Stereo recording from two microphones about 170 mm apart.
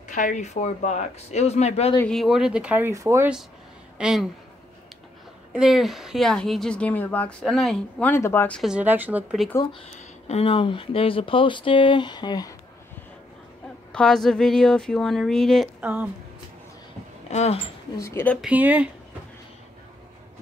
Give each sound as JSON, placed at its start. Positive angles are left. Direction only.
{"t": 0.1, "sound": "speech", "side_deg": 50}
{"t": 2.0, "sound": "speech", "side_deg": 0}
{"t": 4.0, "sound": "speech", "side_deg": 0}
{"t": 5.5, "sound": "speech", "side_deg": -5}
{"t": 8.1, "sound": "speech", "side_deg": 15}
{"t": 8.6, "sound": "speech", "side_deg": -10}
{"t": 10.2, "sound": "speech", "side_deg": 35}
{"t": 13.9, "sound": "speech", "side_deg": 5}
{"t": 15.8, "sound": "speech", "side_deg": -10}
{"t": 17.3, "sound": "speech", "side_deg": 40}
{"t": 17.9, "sound": "speech", "side_deg": 15}
{"t": 18.4, "sound": "speech", "side_deg": -10}